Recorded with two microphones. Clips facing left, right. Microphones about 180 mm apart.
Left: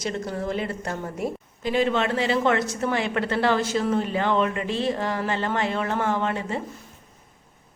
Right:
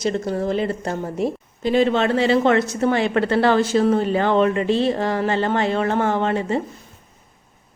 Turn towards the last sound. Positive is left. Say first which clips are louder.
# right 5 dB
turn(degrees=-30)  # may be behind; listen again after turning